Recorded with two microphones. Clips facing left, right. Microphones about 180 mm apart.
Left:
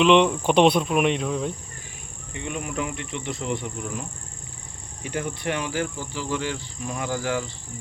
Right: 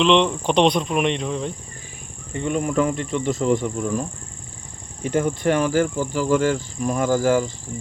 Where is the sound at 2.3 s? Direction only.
45° right (ahead or behind).